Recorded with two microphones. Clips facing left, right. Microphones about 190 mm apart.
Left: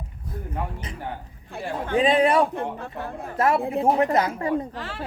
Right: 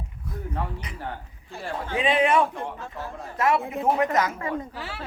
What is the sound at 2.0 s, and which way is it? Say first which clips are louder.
Speech: left 3 dB; 35° left (ahead or behind).